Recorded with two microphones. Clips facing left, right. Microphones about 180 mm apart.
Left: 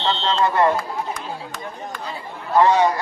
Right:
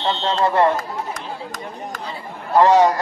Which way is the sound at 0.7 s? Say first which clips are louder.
Left 1 dB; 45° right (ahead or behind).